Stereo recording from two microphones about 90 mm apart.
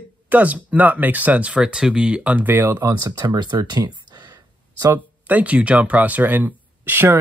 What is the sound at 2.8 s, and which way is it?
Speech, 45° right (ahead or behind).